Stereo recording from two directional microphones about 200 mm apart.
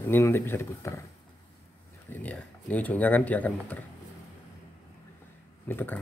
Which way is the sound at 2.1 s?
5° left (ahead or behind).